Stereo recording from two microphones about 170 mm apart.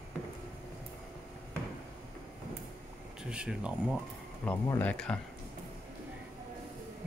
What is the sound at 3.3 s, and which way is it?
Speech, 5° right (ahead or behind).